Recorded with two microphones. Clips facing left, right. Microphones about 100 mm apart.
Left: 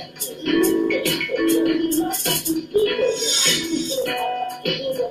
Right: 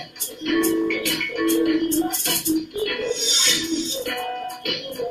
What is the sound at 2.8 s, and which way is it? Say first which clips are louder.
Music: left 6 dB; 45° left (ahead or behind).